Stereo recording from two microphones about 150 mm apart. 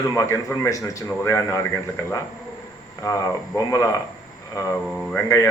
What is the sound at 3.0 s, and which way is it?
A man's voice, 25° left (ahead or behind).